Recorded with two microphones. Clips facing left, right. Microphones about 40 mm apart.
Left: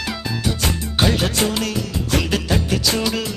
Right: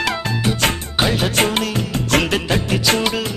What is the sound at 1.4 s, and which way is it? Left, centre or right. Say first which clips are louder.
Music: right 3 dB; right.